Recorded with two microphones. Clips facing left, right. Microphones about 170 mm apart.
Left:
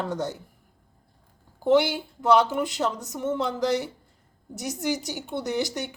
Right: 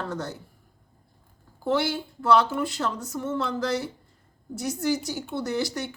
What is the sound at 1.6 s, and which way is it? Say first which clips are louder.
Speech: left 5 dB; 15° left (ahead or behind).